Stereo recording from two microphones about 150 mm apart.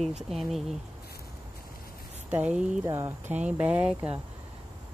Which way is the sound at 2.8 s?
20° right (ahead or behind).